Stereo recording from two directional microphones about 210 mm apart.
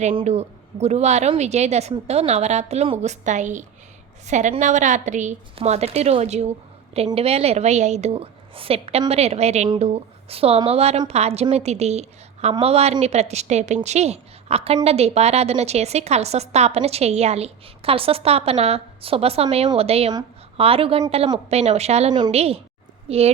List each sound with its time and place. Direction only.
0.0 s a woman's voice: 30° right (ahead or behind)